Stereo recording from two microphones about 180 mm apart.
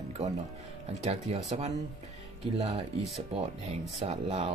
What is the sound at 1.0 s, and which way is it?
Speech, 35° right (ahead or behind).